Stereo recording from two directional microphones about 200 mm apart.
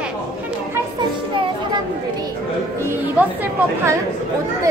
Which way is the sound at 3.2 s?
10° right (ahead or behind).